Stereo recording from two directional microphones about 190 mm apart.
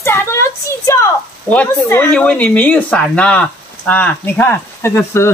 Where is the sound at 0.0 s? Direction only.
15° left (ahead or behind).